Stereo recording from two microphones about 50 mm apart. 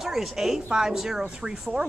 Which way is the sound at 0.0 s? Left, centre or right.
Centre.